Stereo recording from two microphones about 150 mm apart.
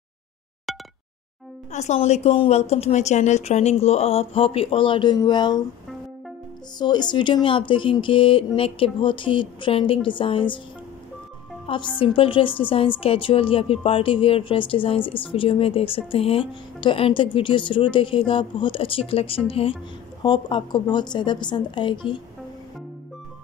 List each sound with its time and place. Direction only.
0.7 s a sound: centre (ahead or behind)
1.7 s a woman's voice: 50° left (ahead or behind); by 5.6 s 30° left (ahead or behind)
6.8 s speech: 30° left (ahead or behind)
11.6 s a woman's voice: 35° left (ahead or behind)